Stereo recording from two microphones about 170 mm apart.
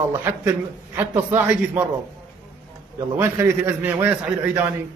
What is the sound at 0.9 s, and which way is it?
Speech, 10° right (ahead or behind).